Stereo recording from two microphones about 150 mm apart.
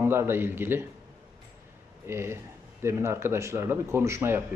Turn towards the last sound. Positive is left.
turn(degrees=-15)  # may be behind; listen again after turning